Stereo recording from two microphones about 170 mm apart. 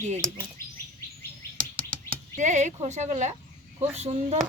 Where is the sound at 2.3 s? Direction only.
45° right (ahead or behind).